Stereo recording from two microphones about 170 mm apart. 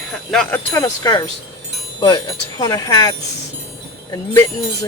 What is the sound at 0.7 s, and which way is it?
Chime, 20° left (ahead or behind).